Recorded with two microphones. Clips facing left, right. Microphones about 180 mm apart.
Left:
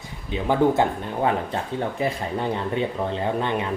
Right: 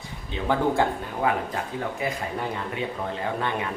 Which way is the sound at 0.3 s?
15° left (ahead or behind).